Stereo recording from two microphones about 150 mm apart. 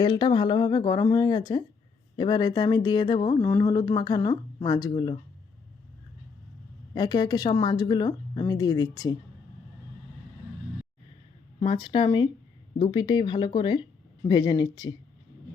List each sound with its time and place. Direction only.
0.0 s speech: 30° left (ahead or behind)
6.9 s speech: 30° left (ahead or behind)
11.6 s speech: 35° left (ahead or behind)